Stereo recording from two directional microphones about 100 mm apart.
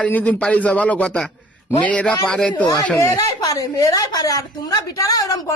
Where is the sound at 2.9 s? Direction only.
30° left (ahead or behind).